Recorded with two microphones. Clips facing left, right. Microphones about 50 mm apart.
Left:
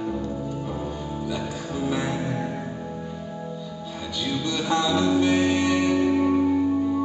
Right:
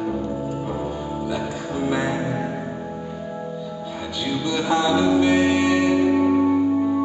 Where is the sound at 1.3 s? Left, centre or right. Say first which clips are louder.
Right 3 dB; centre.